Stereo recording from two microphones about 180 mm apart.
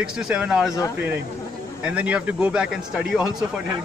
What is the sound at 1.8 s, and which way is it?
Speech, 5° right (ahead or behind).